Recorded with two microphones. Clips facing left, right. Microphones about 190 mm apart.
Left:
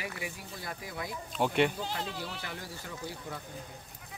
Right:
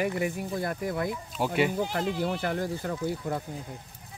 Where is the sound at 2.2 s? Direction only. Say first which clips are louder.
Right 12 dB; 55° right (ahead or behind).